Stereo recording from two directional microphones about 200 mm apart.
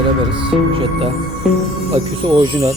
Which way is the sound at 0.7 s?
30° right (ahead or behind).